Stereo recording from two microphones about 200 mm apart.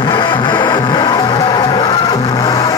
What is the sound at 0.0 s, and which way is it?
Music, 25° left (ahead or behind).